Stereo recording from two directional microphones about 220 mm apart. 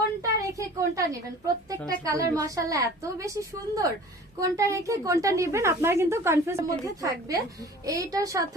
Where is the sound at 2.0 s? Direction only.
15° right (ahead or behind).